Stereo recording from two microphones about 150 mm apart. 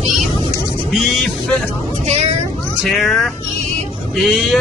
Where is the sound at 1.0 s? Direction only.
5° left (ahead or behind).